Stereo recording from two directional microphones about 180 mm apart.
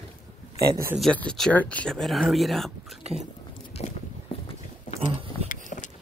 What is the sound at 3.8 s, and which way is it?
Biting, 35° left (ahead or behind).